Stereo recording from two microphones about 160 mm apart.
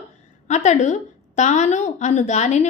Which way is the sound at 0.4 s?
45° left (ahead or behind).